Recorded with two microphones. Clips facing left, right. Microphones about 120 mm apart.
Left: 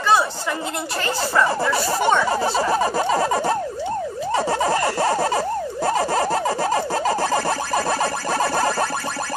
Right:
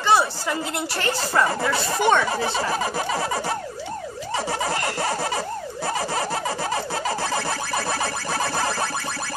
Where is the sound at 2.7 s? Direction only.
40° left (ahead or behind).